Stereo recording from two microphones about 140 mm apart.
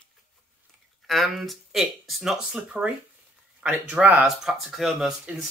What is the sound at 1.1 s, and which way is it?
Speech, centre (ahead or behind).